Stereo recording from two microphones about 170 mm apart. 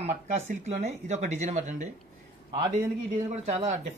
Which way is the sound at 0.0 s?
40° right (ahead or behind).